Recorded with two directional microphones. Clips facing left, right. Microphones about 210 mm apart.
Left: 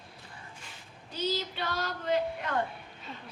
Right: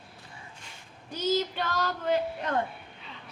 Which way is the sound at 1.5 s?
50° right (ahead or behind).